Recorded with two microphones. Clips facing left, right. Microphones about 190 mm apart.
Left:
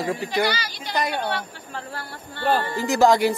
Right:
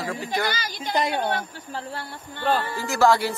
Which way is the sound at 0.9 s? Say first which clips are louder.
Right 1 dB; 25° right (ahead or behind).